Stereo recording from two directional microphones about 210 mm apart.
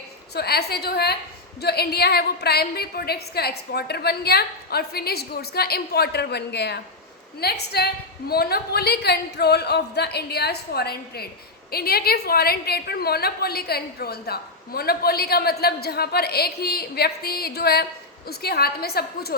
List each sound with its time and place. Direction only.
0.3 s a woman's voice: 50° left (ahead or behind)